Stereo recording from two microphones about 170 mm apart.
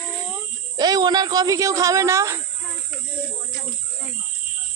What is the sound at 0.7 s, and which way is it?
Speech, 25° right (ahead or behind).